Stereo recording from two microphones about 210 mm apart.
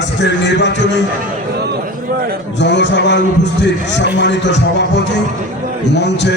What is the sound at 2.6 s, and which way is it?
Music, 55° left (ahead or behind).